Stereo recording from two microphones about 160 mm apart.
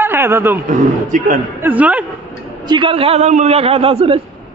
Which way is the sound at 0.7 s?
55° right (ahead or behind).